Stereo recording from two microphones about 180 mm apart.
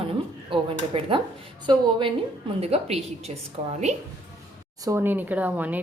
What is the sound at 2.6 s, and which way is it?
A woman's voice, 35° right (ahead or behind).